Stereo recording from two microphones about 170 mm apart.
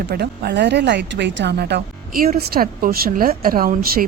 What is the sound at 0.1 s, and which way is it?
Speech, 70° right (ahead or behind).